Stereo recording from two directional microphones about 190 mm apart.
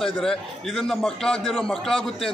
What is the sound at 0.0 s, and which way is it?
A man's voice, centre (ahead or behind).